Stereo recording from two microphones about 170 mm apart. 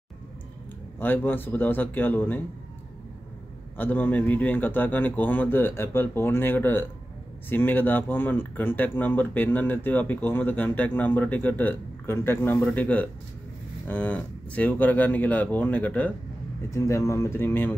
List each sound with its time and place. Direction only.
0.9 s speech: 10° left (ahead or behind)
3.7 s speech: 10° left (ahead or behind)